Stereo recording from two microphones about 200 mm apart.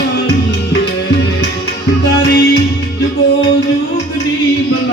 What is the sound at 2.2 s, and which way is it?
Music, 55° left (ahead or behind).